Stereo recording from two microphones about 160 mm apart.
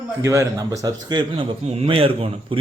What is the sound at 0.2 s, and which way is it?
A man's voice, 15° right (ahead or behind).